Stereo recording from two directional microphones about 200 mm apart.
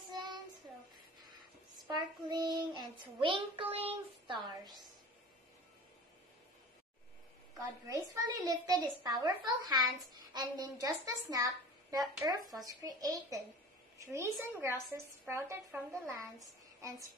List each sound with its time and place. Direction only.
0.1 s child singing: 20° right (ahead or behind)
2.2 s child singing: 20° right (ahead or behind)
7.5 s a woman's voice: 15° right (ahead or behind)